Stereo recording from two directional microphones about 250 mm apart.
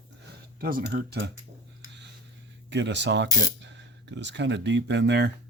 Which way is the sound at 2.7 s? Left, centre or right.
Right.